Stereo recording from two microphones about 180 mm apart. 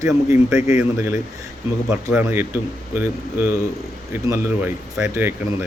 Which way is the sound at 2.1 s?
10° right (ahead or behind).